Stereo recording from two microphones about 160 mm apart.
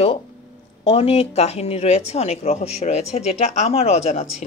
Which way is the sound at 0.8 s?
35° left (ahead or behind).